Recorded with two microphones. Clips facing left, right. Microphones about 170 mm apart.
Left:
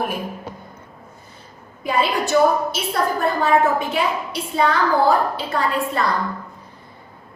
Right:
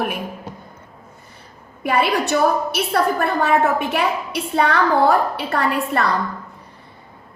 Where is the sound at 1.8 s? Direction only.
65° right (ahead or behind).